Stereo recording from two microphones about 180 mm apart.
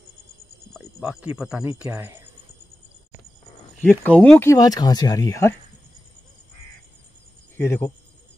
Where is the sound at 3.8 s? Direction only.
5° left (ahead or behind).